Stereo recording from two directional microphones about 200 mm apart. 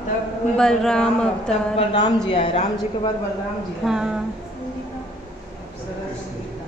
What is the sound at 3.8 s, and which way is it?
Speech, 5° right (ahead or behind).